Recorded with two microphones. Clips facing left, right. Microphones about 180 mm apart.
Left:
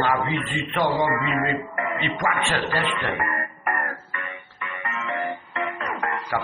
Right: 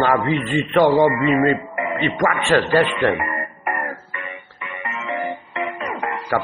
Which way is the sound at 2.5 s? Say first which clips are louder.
Right 10 dB; 70° right (ahead or behind).